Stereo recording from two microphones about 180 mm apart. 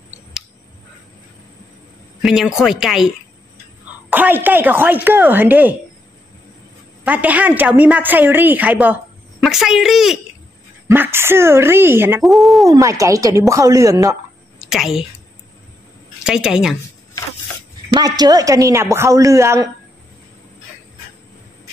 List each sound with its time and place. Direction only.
2.2 s speech: centre (ahead or behind)
4.1 s a woman's voice: 10° right (ahead or behind)
7.1 s a woman's voice: 10° right (ahead or behind)
10.9 s a woman's voice: 15° right (ahead or behind)
12.2 s speech: centre (ahead or behind)
12.6 s a woman's voice: 20° right (ahead or behind)
14.7 s speech: centre (ahead or behind)
16.3 s speech: 5° right (ahead or behind)
17.9 s a woman's voice: 20° right (ahead or behind)